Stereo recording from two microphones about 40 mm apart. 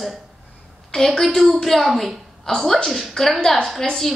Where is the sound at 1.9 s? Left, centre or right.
Centre.